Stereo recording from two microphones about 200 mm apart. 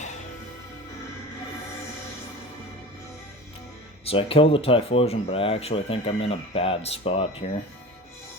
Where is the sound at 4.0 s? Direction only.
30° left (ahead or behind).